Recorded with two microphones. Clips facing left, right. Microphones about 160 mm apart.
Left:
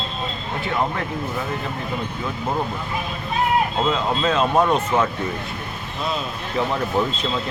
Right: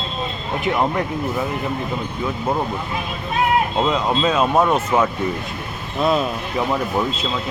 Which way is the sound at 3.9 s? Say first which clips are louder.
Right 2 dB; 10° right (ahead or behind).